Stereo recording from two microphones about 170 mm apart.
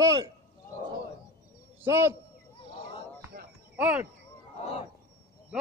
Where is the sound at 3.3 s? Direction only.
60° right (ahead or behind).